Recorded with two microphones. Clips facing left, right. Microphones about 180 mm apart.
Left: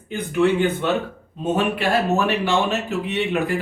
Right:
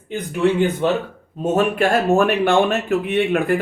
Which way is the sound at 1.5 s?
50° right (ahead or behind).